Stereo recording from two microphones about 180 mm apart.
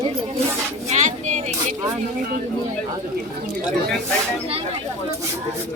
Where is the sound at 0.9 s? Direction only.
40° right (ahead or behind).